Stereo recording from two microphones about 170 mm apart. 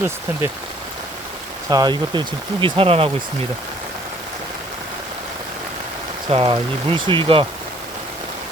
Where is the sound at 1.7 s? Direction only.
25° right (ahead or behind).